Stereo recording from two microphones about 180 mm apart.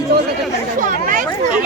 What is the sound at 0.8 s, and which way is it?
Speech, 45° right (ahead or behind).